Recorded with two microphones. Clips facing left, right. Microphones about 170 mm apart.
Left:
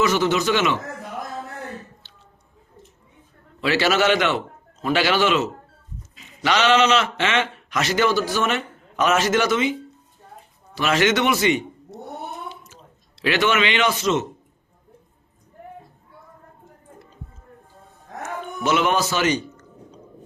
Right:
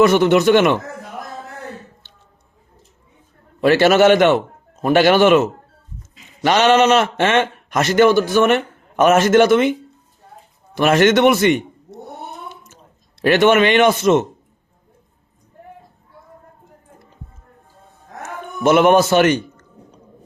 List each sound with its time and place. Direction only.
0.0 s a man's voice: 55° right (ahead or behind)
2.0 s drip: 50° right (ahead or behind)
3.6 s a man's voice: 50° right (ahead or behind)
10.8 s a man's voice: 50° right (ahead or behind)
12.5 s drip: 50° right (ahead or behind)
13.2 s a man's voice: 50° right (ahead or behind)
18.2 s a sound: 55° right (ahead or behind)